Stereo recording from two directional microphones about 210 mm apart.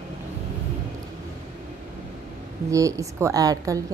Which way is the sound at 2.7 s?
15° right (ahead or behind).